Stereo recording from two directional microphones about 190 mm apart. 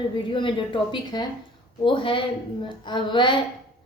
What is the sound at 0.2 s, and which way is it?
A woman's voice, 25° left (ahead or behind).